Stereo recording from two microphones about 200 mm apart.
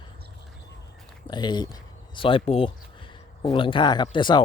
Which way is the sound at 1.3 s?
20° left (ahead or behind).